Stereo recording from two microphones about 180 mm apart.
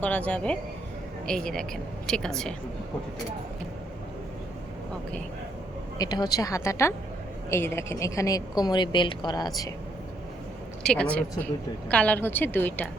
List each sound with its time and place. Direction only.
0.0 s a woman's voice: 10° left (ahead or behind)
6.0 s a woman's voice: 20° left (ahead or behind)
10.8 s a woman's voice: 5° left (ahead or behind)